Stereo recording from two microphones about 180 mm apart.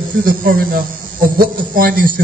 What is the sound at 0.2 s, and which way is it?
A man's voice, 50° right (ahead or behind).